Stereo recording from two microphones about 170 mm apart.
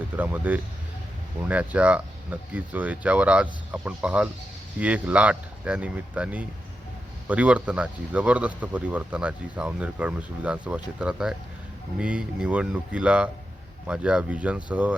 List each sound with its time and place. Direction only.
0.2 s speech: 10° right (ahead or behind)